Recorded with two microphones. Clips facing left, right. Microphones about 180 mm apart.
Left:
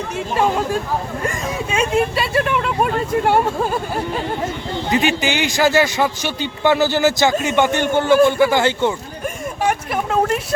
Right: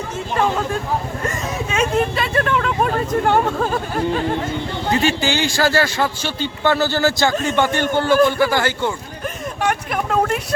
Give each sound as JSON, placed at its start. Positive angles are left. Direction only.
{"t": 1.7, "sound": "a sound", "side_deg": 10}
{"t": 4.9, "sound": "speech", "side_deg": 15}
{"t": 9.6, "sound": "speech", "side_deg": 5}